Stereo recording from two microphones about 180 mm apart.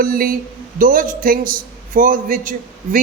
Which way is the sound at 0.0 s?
50° right (ahead or behind).